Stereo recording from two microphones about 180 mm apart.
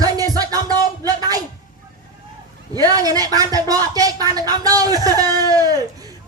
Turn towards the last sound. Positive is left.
turn(degrees=-20)  # may be behind; listen again after turning